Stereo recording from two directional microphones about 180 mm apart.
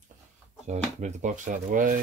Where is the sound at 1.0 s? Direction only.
40° right (ahead or behind).